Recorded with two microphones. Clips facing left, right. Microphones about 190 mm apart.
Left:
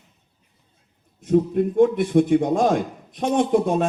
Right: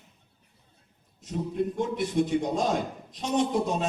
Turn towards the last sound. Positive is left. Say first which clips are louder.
# left 6 dB
turn(degrees=55)  # may be behind; listen again after turning